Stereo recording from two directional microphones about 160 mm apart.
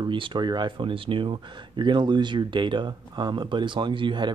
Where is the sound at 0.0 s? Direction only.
30° right (ahead or behind).